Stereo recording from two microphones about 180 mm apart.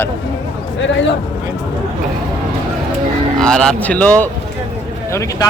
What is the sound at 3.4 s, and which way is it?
Speech, 5° left (ahead or behind).